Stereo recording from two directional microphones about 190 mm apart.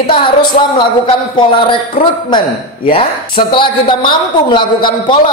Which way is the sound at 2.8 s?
25° left (ahead or behind).